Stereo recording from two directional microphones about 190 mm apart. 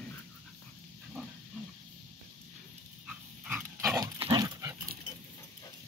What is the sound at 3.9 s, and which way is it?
Dog, 20° right (ahead or behind).